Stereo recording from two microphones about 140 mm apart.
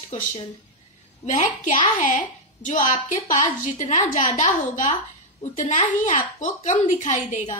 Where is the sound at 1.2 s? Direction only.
60° left (ahead or behind).